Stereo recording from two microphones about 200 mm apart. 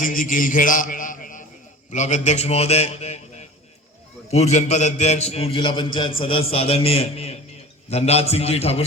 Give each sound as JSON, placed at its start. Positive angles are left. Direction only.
{"t": 0.0, "sound": "a man's voice", "side_deg": 40}